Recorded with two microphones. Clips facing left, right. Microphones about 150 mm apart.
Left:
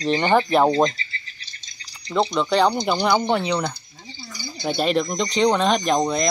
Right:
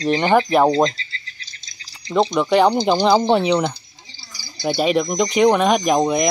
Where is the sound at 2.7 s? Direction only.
30° right (ahead or behind).